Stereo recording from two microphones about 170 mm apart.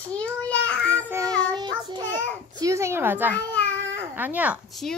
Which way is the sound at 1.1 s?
20° right (ahead or behind).